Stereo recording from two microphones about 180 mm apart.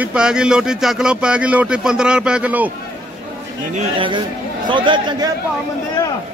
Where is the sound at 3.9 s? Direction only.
30° right (ahead or behind).